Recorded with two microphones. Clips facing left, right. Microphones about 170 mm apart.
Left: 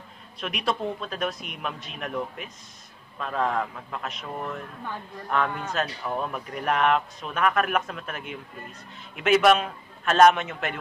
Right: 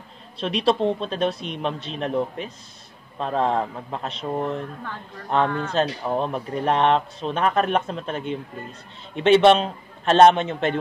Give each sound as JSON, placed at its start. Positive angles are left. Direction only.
{"t": 0.4, "sound": "speech", "side_deg": -30}